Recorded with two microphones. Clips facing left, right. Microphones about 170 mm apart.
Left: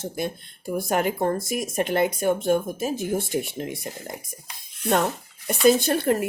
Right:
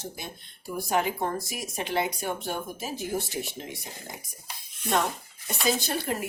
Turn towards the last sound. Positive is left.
turn(degrees=50)  # may be behind; listen again after turning